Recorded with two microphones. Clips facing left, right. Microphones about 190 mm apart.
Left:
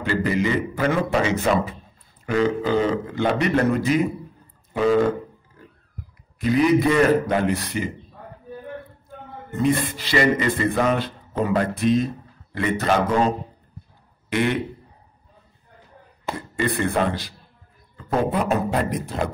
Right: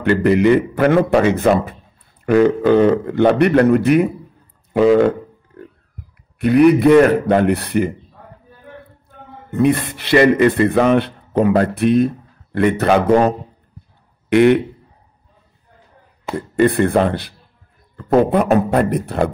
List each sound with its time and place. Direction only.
0.0 s a man's voice: 65° right (ahead or behind)
6.3 s a man's voice: 60° right (ahead or behind)
9.5 s a man's voice: 65° right (ahead or behind)
14.3 s a man's voice: 60° right (ahead or behind)
16.3 s a man's voice: 55° right (ahead or behind)